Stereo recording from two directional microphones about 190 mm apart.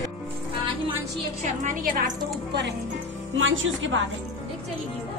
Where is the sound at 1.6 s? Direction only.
45° right (ahead or behind).